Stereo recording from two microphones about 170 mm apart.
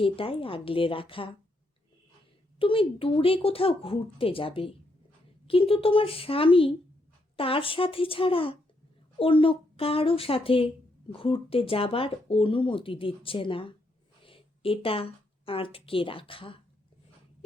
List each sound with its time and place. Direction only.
0.0 s speech: 30° left (ahead or behind)
2.6 s speech: 30° left (ahead or behind)